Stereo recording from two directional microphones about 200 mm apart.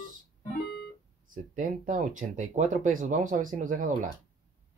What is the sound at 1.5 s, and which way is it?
Speech, 40° right (ahead or behind).